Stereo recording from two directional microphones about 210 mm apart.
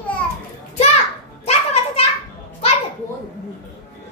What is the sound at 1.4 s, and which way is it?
Children playing, 30° left (ahead or behind).